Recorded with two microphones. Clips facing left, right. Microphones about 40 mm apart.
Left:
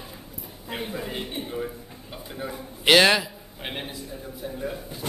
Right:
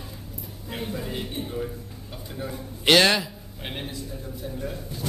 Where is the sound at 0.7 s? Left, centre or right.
Centre.